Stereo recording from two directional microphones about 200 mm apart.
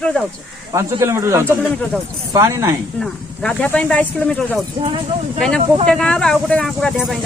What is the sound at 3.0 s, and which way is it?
Speech, 5° left (ahead or behind).